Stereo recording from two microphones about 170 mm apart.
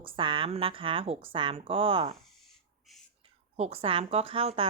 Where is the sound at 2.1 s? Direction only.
Centre (ahead or behind).